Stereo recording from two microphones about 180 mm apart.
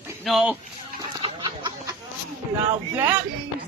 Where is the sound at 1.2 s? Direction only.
25° right (ahead or behind).